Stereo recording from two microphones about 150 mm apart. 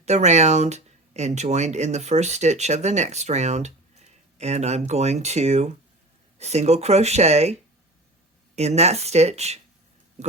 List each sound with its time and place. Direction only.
0.0 s speech: 50° right (ahead or behind)
8.5 s speech: 45° right (ahead or behind)